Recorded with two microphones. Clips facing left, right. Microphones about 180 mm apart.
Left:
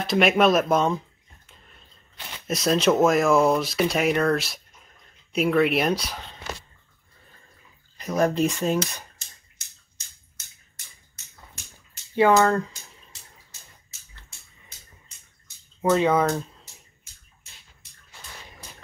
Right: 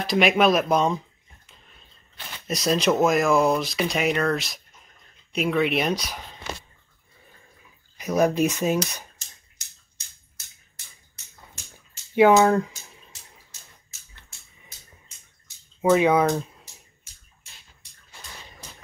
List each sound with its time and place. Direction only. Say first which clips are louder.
0.0 s speech: even; centre (ahead or behind)
2.4 s speech: left 1 dB; centre (ahead or behind)
8.0 s speech: right 1 dB; 5° right (ahead or behind)
12.2 s speech: right 2 dB; 15° right (ahead or behind)
15.8 s speech: right 2 dB; 10° right (ahead or behind)